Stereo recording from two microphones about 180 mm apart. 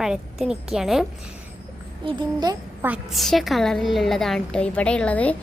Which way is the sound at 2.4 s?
20° right (ahead or behind).